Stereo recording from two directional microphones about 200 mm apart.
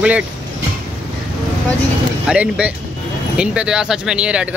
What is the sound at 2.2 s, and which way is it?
Speech, 5° right (ahead or behind).